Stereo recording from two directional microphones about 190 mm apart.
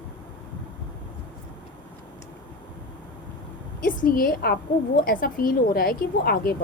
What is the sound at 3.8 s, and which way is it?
A woman's voice, 50° left (ahead or behind).